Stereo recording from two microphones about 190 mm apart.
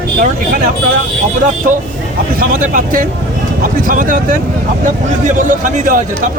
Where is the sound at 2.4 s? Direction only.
45° right (ahead or behind).